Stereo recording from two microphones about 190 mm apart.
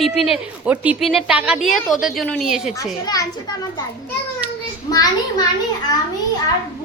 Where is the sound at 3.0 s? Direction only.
20° left (ahead or behind).